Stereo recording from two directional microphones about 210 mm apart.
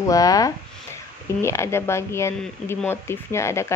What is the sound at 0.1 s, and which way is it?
Speech, 15° left (ahead or behind).